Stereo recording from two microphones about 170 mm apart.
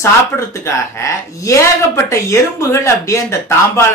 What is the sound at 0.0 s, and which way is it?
Speech, 15° left (ahead or behind).